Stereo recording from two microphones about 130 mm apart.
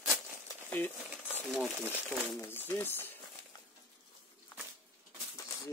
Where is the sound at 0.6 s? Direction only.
15° left (ahead or behind).